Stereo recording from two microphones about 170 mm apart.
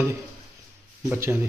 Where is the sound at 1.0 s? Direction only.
10° right (ahead or behind).